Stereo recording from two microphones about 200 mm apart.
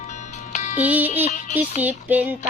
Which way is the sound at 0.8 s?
5° right (ahead or behind).